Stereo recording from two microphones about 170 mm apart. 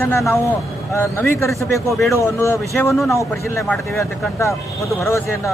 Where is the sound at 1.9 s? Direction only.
Centre (ahead or behind).